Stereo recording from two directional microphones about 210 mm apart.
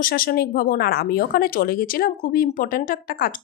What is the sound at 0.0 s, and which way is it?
Speech, 45° left (ahead or behind).